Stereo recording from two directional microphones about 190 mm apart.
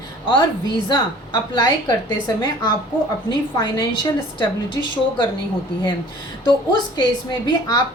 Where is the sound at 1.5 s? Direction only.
20° left (ahead or behind).